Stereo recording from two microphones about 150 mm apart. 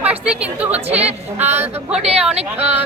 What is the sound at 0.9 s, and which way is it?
Speech, 45° right (ahead or behind).